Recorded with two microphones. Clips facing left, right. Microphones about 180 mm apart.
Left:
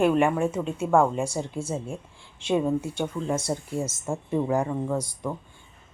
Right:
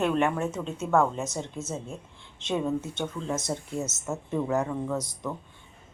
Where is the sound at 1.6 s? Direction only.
30° left (ahead or behind).